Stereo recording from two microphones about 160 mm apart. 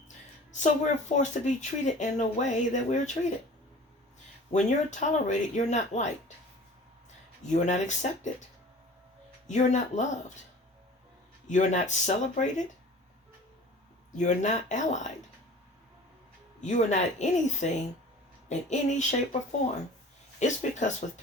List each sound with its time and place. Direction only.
0.1 s speech: 50° left (ahead or behind)
4.5 s speech: 50° left (ahead or behind)
7.5 s speech: 45° left (ahead or behind)
9.5 s speech: 45° left (ahead or behind)
11.4 s speech: 50° left (ahead or behind)
14.2 s speech: 50° left (ahead or behind)
16.6 s speech: 50° left (ahead or behind)